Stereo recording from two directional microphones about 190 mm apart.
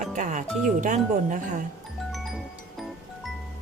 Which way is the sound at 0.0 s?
40° right (ahead or behind).